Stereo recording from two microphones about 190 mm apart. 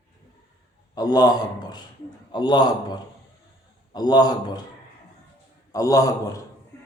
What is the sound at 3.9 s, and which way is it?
Speech, 20° left (ahead or behind).